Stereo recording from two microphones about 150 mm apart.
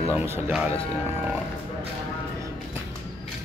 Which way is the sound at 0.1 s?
10° right (ahead or behind).